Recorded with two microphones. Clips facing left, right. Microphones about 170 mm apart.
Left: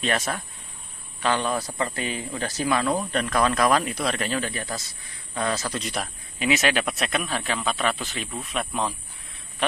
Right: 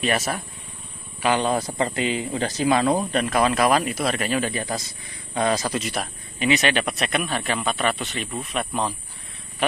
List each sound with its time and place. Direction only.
0.0 s speech: 5° right (ahead or behind)
5.8 s speech: centre (ahead or behind)